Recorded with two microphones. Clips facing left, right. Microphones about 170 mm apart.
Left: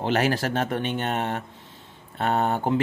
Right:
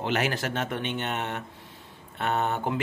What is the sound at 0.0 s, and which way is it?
Speech, 35° left (ahead or behind).